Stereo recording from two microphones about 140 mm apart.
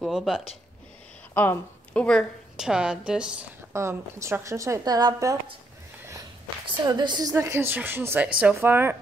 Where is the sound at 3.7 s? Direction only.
20° right (ahead or behind).